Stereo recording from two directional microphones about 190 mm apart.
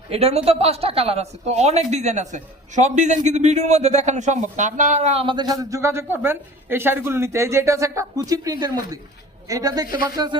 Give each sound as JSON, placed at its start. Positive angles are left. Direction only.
{"t": 0.1, "sound": "speech", "side_deg": -30}